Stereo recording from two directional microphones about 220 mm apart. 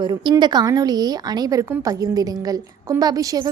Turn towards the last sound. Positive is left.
turn(degrees=-15)  # may be behind; listen again after turning